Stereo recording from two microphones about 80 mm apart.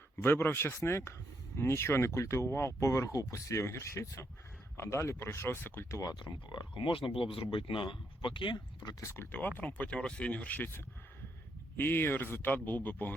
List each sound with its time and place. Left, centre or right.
0.2 s speech: left
6.0 s speech: left
9.0 s speech: left
9.3 s speech: left